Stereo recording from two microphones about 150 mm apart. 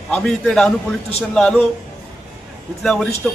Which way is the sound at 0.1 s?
5° left (ahead or behind).